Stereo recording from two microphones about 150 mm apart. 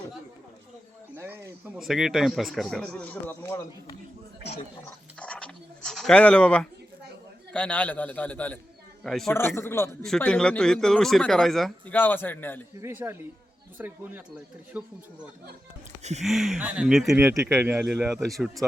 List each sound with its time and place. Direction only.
1.1 s a sound: 15° right (ahead or behind)
1.7 s speech: 5° right (ahead or behind); by 3.6 s 15° left (ahead or behind)
5.2 s dog: 5° left (ahead or behind)
7.5 s a man's voice: 10° left (ahead or behind)
9.6 s a man's voice: 15° left (ahead or behind)
10.0 s speech: 5° left (ahead or behind)
11.9 s a man's voice: 15° left (ahead or behind)
12.8 s speech: 15° right (ahead or behind)
16.2 s speech: centre (ahead or behind)
17.2 s speech: 15° right (ahead or behind); by 18.6 s centre (ahead or behind)